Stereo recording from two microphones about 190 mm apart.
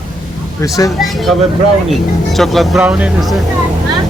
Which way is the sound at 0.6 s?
20° left (ahead or behind).